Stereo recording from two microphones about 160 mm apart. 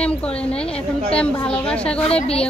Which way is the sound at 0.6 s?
40° left (ahead or behind).